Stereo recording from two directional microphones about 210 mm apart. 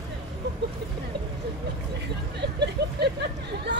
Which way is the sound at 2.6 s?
55° right (ahead or behind).